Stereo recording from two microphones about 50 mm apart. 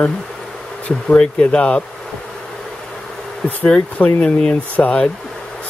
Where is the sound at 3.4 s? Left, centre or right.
Left.